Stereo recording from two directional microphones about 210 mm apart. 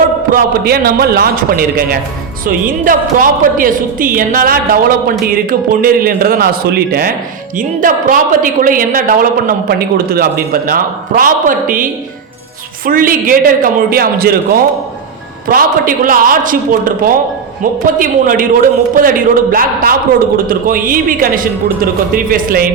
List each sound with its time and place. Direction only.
0.3 s a man's voice: 45° right (ahead or behind)